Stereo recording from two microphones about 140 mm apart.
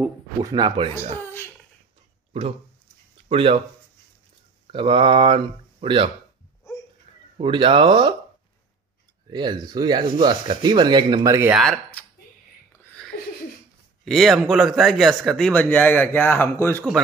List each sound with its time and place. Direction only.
0.4 s speech: 25° right (ahead or behind)
3.3 s speech: 40° right (ahead or behind)
4.6 s speech: 40° right (ahead or behind)
7.3 s speech: 35° right (ahead or behind)
9.3 s speech: 30° right (ahead or behind)
11.5 s speech: centre (ahead or behind)
14.0 s speech: centre (ahead or behind)